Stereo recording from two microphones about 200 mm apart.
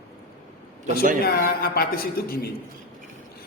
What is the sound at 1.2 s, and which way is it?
A man's voice, 50° left (ahead or behind).